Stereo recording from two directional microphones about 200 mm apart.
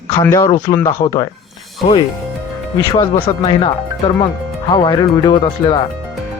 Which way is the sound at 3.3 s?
20° left (ahead or behind).